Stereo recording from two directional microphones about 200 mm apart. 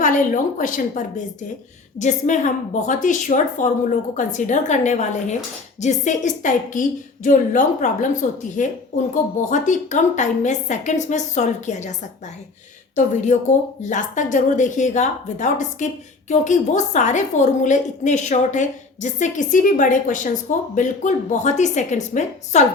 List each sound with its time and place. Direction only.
0.6 s a woman's voice: 40° left (ahead or behind)
13.3 s a woman's voice: 40° left (ahead or behind)